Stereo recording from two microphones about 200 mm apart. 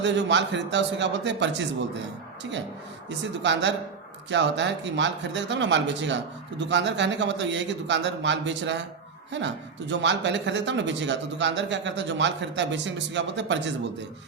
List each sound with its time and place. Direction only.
0.0 s speech: 60° right (ahead or behind)
3.4 s speech: 60° right (ahead or behind)